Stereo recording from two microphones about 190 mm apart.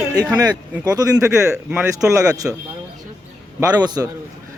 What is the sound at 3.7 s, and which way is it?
Speech, 20° right (ahead or behind).